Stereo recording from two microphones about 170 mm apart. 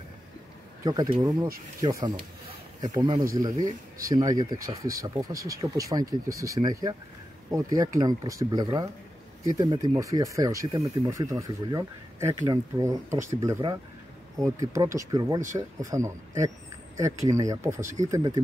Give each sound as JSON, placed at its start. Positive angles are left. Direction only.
{"t": 0.8, "sound": "speech", "side_deg": -20}